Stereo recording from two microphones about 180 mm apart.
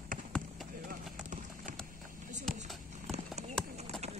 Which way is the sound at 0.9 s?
45° right (ahead or behind).